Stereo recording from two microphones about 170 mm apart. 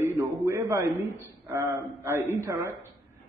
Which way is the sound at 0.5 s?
20° right (ahead or behind).